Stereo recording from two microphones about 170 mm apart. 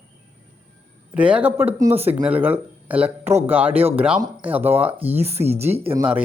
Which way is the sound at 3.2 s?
40° right (ahead or behind).